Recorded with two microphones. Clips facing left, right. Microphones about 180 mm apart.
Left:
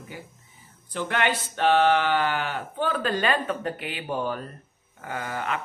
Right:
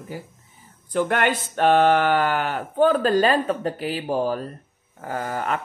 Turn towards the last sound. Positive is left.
turn(degrees=-45)  # may be behind; listen again after turning